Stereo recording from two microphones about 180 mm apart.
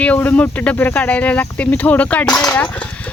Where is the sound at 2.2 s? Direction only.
20° left (ahead or behind).